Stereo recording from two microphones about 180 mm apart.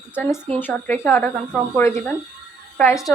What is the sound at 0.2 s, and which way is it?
A woman's voice, 10° left (ahead or behind).